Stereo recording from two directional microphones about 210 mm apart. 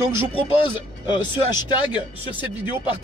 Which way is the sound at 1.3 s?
10° right (ahead or behind).